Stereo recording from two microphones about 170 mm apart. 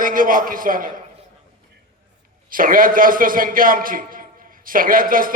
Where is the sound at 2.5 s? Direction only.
55° right (ahead or behind).